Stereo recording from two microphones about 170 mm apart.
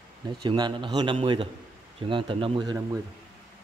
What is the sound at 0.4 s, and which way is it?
A man's voice, 25° right (ahead or behind).